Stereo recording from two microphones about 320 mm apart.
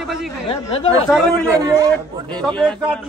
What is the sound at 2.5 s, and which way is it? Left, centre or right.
Speech, centre.